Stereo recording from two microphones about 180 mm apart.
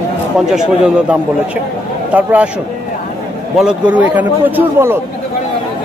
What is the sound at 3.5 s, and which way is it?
A man's voice, 5° right (ahead or behind).